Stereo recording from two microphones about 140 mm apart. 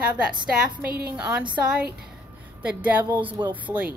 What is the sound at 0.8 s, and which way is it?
Speech, 90° right.